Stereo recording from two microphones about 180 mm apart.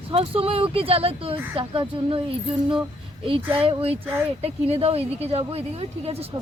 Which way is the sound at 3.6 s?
30° right (ahead or behind).